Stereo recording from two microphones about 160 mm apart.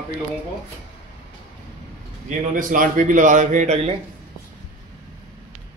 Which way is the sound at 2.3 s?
55° right (ahead or behind).